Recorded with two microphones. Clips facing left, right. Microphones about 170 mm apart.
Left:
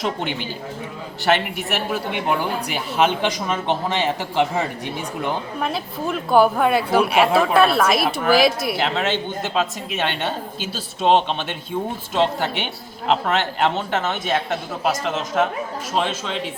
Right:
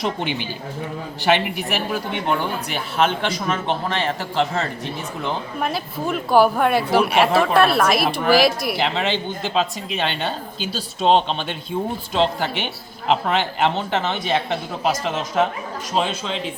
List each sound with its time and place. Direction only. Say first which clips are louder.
1.2 s speech: right 1 dB; centre (ahead or behind)
5.5 s speech: even; centre (ahead or behind)
12.1 s speech: even; 5° right (ahead or behind)